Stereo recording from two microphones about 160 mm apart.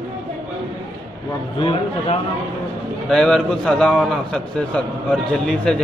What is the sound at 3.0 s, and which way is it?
A man's voice, centre (ahead or behind).